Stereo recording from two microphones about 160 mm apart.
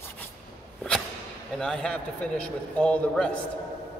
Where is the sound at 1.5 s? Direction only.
5° left (ahead or behind).